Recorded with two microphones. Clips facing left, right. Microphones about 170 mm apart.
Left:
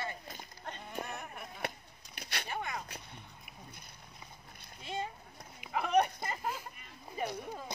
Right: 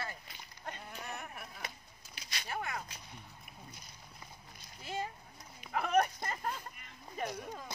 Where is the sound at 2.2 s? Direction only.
60° left (ahead or behind).